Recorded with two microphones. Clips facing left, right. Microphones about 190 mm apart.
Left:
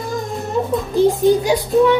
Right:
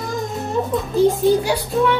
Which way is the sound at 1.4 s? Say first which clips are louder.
Left 5 dB; 15° left (ahead or behind).